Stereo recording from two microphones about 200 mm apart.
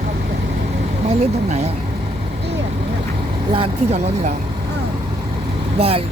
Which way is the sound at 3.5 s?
30° right (ahead or behind).